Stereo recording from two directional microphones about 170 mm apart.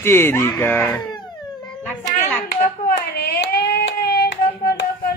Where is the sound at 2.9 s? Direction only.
65° left (ahead or behind).